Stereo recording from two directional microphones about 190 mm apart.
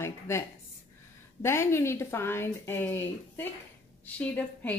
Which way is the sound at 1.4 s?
15° left (ahead or behind).